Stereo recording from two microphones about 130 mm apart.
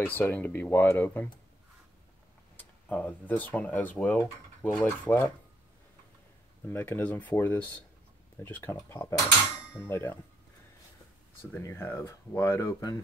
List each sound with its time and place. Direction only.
0.0 s speech: 15° left (ahead or behind)
2.5 s speech: 10° left (ahead or behind)
4.6 s speech: 25° left (ahead or behind)
6.7 s speech: 15° left (ahead or behind)
11.5 s speech: 20° left (ahead or behind)